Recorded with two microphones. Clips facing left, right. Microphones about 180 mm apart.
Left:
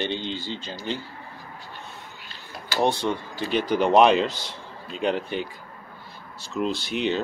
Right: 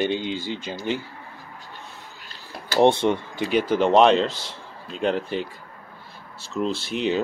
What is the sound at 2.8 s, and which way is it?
Speech, 25° right (ahead or behind).